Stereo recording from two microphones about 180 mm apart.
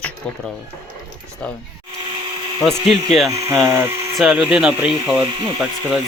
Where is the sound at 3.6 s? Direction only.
15° right (ahead or behind).